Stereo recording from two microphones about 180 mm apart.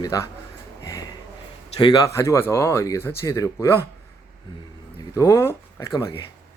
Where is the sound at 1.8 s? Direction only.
20° left (ahead or behind).